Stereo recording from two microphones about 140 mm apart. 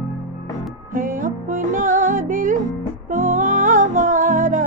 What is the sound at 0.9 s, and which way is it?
Music, 70° right (ahead or behind).